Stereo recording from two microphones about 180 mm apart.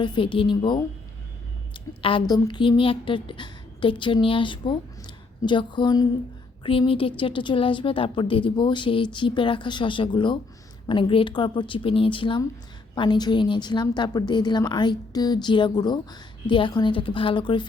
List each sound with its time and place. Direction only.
0.0 s a woman's voice: 25° left (ahead or behind)